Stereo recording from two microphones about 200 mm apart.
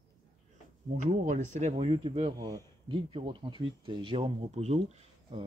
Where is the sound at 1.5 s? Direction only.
30° right (ahead or behind).